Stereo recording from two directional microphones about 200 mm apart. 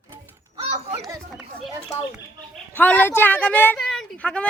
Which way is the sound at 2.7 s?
10° left (ahead or behind).